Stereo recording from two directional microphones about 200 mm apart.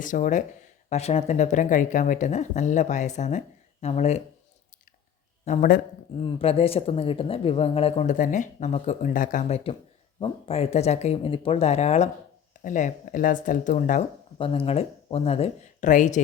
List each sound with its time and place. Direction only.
0.0 s speech: 40° left (ahead or behind)
6.1 s speech: 30° left (ahead or behind)
14.3 s speech: 25° left (ahead or behind)